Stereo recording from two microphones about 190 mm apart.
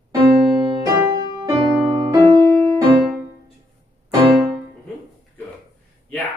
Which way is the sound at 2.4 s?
15° left (ahead or behind).